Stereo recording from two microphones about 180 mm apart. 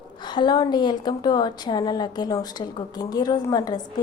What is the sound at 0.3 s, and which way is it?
A woman's voice, 25° left (ahead or behind).